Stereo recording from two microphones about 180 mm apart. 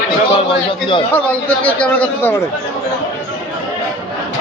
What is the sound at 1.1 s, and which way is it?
A man's voice, 10° left (ahead or behind).